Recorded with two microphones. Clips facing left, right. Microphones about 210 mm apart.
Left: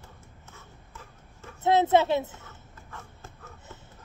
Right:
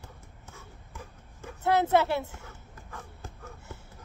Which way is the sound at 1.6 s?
20° left (ahead or behind).